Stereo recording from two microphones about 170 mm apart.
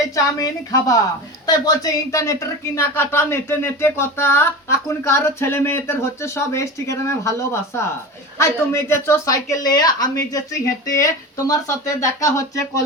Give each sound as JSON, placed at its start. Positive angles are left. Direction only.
{"t": 0.1, "sound": "a woman's voice", "side_deg": 20}